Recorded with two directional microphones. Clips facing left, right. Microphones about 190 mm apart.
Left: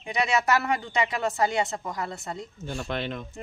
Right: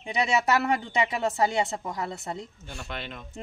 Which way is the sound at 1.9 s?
25° right (ahead or behind).